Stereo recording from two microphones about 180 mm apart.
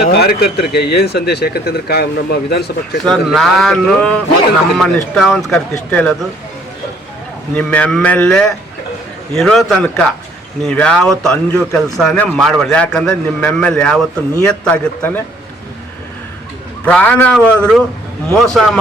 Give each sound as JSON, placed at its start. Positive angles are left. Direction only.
{"t": 0.0, "sound": "speech", "side_deg": 60}
{"t": 3.1, "sound": "a man's voice", "side_deg": 5}
{"t": 7.5, "sound": "a man's voice", "side_deg": 10}
{"t": 16.8, "sound": "a man's voice", "side_deg": 10}